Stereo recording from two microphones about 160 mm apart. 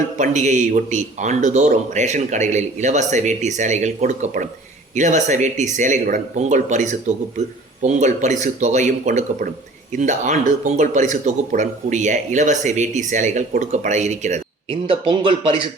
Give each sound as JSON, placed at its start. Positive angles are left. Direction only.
{"t": 0.2, "sound": "speech", "side_deg": -45}
{"t": 14.7, "sound": "speech", "side_deg": -30}